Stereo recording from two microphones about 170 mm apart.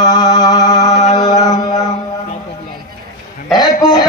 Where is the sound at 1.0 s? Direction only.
45° left (ahead or behind).